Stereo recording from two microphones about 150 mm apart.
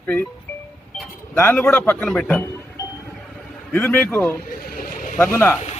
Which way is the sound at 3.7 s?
10° left (ahead or behind).